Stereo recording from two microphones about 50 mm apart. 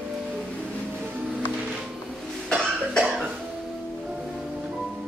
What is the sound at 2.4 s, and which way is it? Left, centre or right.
Cough, centre.